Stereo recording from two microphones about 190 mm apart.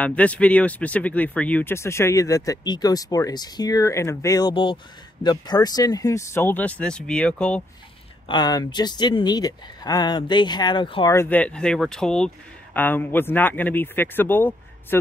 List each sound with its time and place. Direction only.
0.0 s speech: 5° left (ahead or behind)
8.3 s speech: 20° left (ahead or behind)
11.1 s speech: 10° left (ahead or behind)